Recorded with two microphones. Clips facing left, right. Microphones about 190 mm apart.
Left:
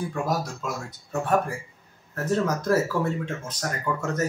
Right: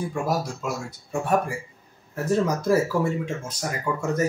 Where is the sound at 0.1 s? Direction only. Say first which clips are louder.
Right 1 dB; 10° right (ahead or behind).